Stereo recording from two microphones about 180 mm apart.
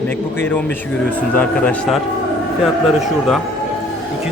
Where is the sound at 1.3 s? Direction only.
5° left (ahead or behind).